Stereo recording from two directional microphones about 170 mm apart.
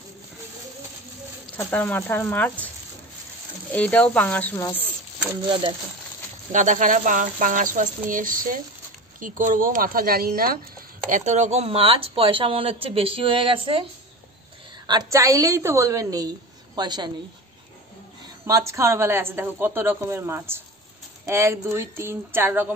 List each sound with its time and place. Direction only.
1.6 s speech: 10° left (ahead or behind)
3.7 s speech: 10° left (ahead or behind)
6.5 s speech: 50° right (ahead or behind)
11.1 s speech: 45° right (ahead or behind); by 13.8 s 30° right (ahead or behind)
14.9 s a woman's voice: 20° right (ahead or behind)
18.5 s a woman's voice: 15° right (ahead or behind)